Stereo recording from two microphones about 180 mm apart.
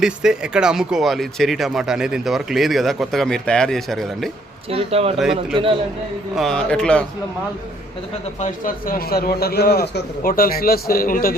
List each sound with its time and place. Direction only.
0.0 s speech: 5° right (ahead or behind)
4.7 s speech: 35° right (ahead or behind)
5.1 s speech: centre (ahead or behind)
8.4 s a man's voice: 50° left (ahead or behind)